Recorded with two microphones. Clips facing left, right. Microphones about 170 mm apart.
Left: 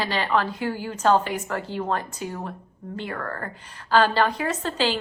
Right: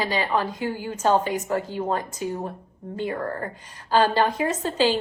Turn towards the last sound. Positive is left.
turn(degrees=-15)  # may be behind; listen again after turning